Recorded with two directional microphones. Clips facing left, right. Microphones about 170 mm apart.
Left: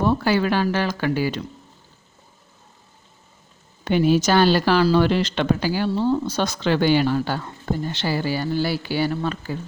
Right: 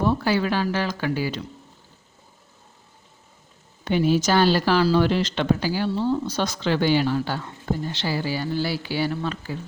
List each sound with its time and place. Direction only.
0.0 s speech: 60° left (ahead or behind)
3.8 s speech: 65° left (ahead or behind); by 9.6 s 50° left (ahead or behind)